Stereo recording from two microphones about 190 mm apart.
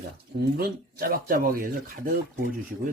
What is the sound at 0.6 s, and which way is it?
Speech, 50° right (ahead or behind).